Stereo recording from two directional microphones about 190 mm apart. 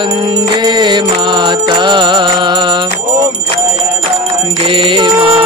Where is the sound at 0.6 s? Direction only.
25° right (ahead or behind).